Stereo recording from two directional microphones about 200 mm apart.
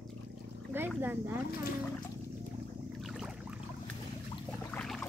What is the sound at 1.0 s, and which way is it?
Speech, 10° right (ahead or behind).